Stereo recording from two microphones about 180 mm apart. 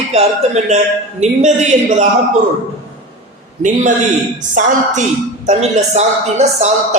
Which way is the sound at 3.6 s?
45° right (ahead or behind).